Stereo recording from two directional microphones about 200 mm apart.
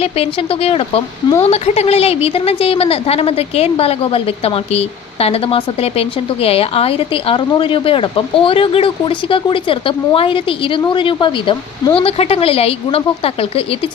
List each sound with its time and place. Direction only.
0.0 s a woman's voice: 30° left (ahead or behind)